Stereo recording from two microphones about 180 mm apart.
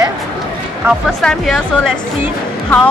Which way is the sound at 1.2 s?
Centre (ahead or behind).